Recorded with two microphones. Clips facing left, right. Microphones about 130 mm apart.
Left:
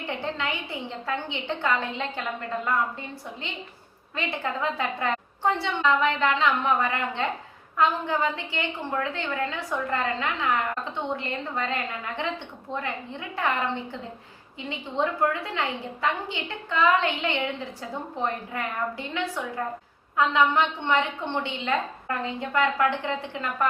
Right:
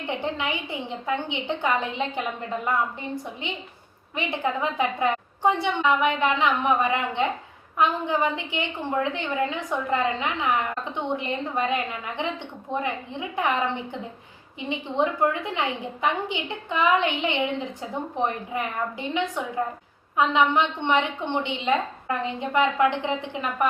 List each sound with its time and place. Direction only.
0.1 s a woman's voice: 15° right (ahead or behind)
4.1 s a woman's voice: 15° right (ahead or behind)